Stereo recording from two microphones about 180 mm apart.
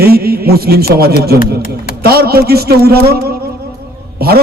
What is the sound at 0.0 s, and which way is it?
A man's voice, 60° right (ahead or behind).